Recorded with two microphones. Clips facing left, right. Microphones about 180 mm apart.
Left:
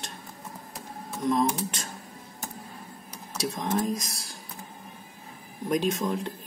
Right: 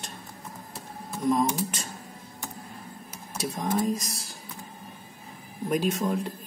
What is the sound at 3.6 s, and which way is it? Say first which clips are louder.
Speech: right 2 dB; centre (ahead or behind).